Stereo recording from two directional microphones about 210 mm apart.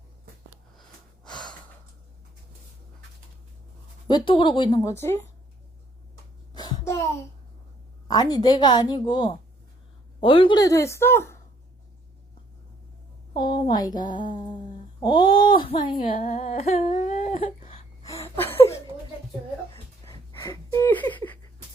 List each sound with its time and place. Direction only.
4.1 s a woman's voice: 25° left (ahead or behind)
6.5 s a sound: 20° left (ahead or behind)
8.0 s a woman's voice: 20° left (ahead or behind)
13.3 s a woman's voice: 20° left (ahead or behind)
16.1 s humming: 35° left (ahead or behind)
18.0 s a sound: 10° left (ahead or behind)
20.1 s gasp: 15° left (ahead or behind)